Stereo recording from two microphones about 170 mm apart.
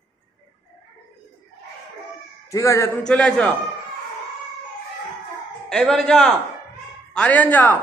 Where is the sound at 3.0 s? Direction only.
5° left (ahead or behind).